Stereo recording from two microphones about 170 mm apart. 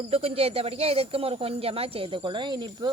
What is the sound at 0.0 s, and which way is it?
Speech, 35° right (ahead or behind).